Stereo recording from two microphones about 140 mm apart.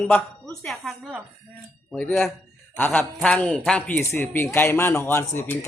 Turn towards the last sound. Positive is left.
turn(degrees=15)  # may be behind; listen again after turning